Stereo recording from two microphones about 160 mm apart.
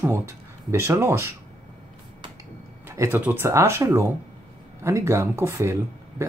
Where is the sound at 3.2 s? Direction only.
15° right (ahead or behind).